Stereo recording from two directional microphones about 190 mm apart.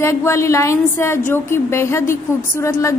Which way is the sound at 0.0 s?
15° left (ahead or behind).